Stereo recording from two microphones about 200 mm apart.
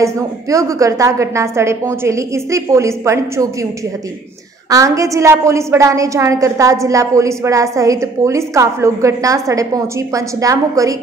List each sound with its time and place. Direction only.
0.0 s a woman's voice: 15° right (ahead or behind)
4.6 s a woman's voice: 15° right (ahead or behind)